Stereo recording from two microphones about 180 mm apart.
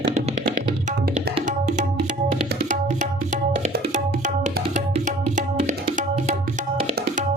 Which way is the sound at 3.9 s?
45° right (ahead or behind).